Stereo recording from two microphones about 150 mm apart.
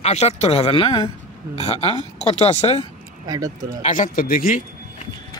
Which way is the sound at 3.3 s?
25° right (ahead or behind).